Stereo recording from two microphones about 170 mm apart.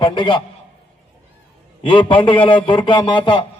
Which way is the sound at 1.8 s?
30° left (ahead or behind).